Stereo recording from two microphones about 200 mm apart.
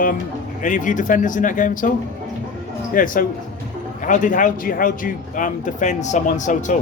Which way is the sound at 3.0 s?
40° left (ahead or behind).